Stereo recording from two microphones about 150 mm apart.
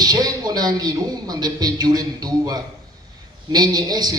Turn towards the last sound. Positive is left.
turn(degrees=-25)  # may be behind; listen again after turning